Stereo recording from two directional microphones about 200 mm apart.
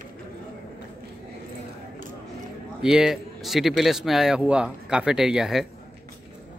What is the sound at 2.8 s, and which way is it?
Speech, 5° right (ahead or behind).